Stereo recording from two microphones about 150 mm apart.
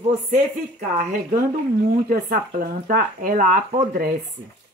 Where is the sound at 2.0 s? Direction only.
70° right (ahead or behind).